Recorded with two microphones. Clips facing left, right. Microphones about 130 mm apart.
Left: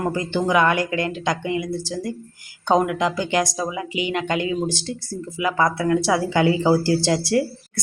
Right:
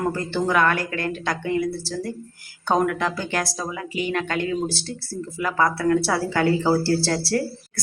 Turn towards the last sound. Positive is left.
turn(degrees=15)  # may be behind; listen again after turning